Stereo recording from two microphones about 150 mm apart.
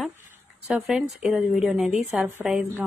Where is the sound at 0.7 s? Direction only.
5° right (ahead or behind).